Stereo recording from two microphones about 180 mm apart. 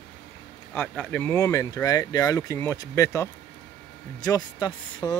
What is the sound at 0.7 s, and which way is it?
Speech, 10° left (ahead or behind).